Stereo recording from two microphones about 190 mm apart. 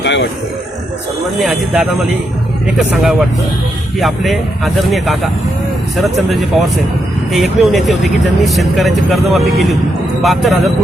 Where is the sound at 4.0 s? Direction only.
Centre (ahead or behind).